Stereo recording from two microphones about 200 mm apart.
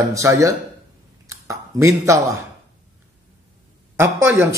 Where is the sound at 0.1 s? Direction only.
15° right (ahead or behind).